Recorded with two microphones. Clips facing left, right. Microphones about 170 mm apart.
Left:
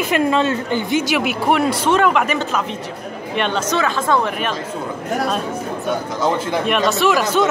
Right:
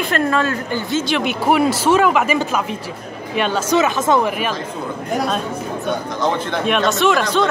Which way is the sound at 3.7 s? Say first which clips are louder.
Right 4 dB; 20° right (ahead or behind).